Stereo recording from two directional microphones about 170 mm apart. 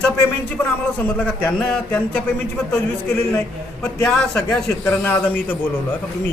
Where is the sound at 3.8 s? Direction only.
5° left (ahead or behind).